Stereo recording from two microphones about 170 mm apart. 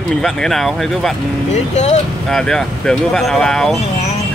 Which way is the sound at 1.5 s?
40° left (ahead or behind).